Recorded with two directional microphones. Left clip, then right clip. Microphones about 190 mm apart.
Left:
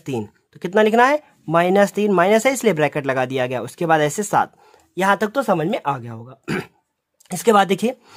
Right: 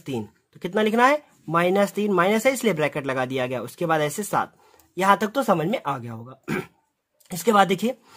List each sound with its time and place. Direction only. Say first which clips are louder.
0.0 s speech: left 5 dB; 30° left (ahead or behind)